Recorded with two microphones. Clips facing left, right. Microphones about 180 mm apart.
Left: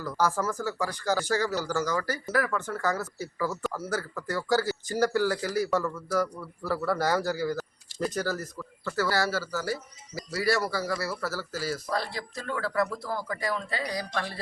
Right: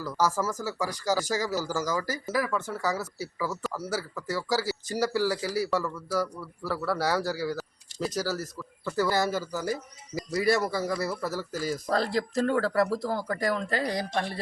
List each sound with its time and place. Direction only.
0.0 s a man's voice: 5° right (ahead or behind)
11.9 s speech: 45° right (ahead or behind)